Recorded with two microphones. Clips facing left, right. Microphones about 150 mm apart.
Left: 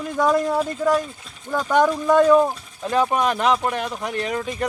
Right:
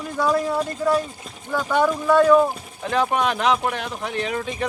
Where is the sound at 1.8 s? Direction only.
15° left (ahead or behind).